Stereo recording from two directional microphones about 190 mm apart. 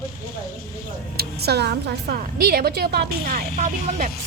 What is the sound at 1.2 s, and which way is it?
A woman's voice, 60° right (ahead or behind).